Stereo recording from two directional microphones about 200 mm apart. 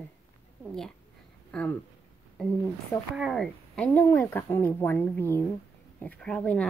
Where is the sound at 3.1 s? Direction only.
Centre (ahead or behind).